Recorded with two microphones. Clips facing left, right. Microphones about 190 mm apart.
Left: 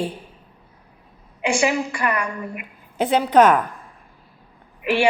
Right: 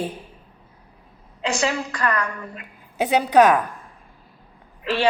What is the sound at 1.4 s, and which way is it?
A woman's voice, 10° left (ahead or behind).